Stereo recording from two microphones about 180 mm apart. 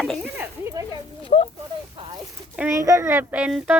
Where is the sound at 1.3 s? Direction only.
35° left (ahead or behind).